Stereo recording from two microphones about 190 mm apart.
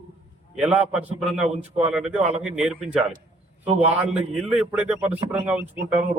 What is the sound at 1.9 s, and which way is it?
A man's voice, 5° right (ahead or behind).